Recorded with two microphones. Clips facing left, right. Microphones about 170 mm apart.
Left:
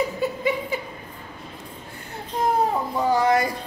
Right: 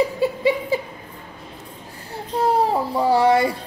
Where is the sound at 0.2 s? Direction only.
30° right (ahead or behind).